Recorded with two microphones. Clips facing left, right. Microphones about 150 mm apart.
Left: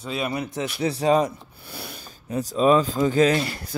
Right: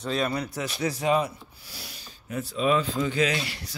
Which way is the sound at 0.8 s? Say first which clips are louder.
Left 4 dB; 30° left (ahead or behind).